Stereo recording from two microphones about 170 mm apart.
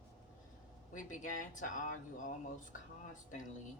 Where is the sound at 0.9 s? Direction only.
50° left (ahead or behind).